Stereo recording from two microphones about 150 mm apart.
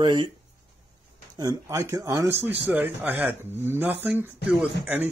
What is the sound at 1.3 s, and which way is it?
Speech, 25° right (ahead or behind).